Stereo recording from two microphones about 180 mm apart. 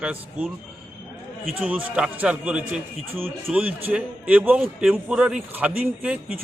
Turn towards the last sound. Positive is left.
turn(degrees=-10)  # may be behind; listen again after turning